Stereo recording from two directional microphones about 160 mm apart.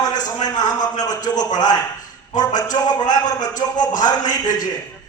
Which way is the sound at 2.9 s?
25° left (ahead or behind).